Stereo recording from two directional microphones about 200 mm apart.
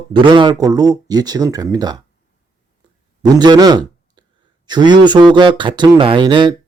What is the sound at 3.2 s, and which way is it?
Speech, 20° right (ahead or behind).